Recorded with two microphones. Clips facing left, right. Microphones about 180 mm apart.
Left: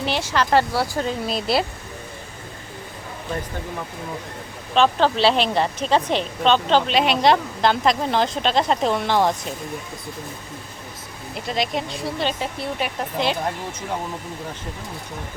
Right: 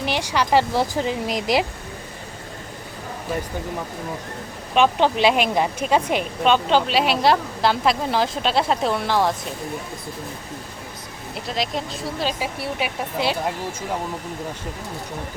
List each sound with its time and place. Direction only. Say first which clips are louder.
0.0 s speech: even; 15° right (ahead or behind)
4.7 s a woman's voice: even; 15° right (ahead or behind)
11.4 s a woman's voice: left 2 dB; centre (ahead or behind)